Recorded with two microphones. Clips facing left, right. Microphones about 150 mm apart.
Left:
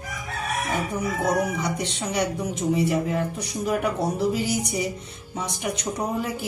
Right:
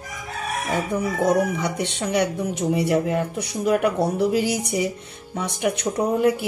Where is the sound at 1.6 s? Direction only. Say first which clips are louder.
Right 3 dB; 60° right (ahead or behind).